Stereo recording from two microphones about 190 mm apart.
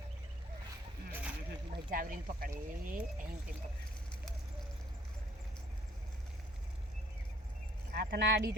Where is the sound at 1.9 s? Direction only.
45° right (ahead or behind).